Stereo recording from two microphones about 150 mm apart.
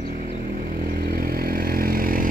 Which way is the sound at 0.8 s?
85° right.